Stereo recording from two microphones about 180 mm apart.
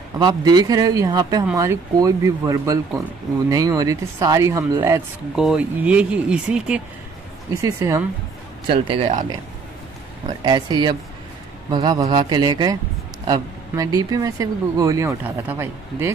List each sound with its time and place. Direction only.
0.2 s speech: 20° right (ahead or behind)
5.3 s speech: 5° right (ahead or behind)
7.6 s speech: 15° right (ahead or behind)
8.6 s speech: 30° right (ahead or behind)
10.4 s speech: 20° right (ahead or behind)